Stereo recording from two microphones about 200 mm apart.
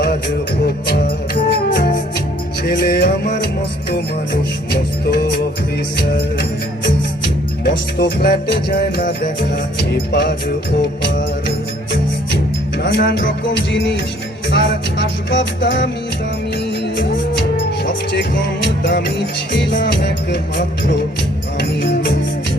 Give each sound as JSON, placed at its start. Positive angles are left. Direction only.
{"t": 0.6, "sound": "music", "side_deg": 55}
{"t": 7.6, "sound": "music", "side_deg": 55}
{"t": 9.7, "sound": "music", "side_deg": 60}
{"t": 12.8, "sound": "music", "side_deg": 55}
{"t": 17.7, "sound": "music", "side_deg": 60}